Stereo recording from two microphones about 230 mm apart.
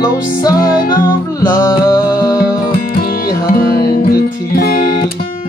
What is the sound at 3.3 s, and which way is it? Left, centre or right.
Music, left.